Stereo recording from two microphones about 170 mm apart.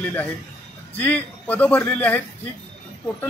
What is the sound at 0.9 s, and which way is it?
Speech, 10° left (ahead or behind).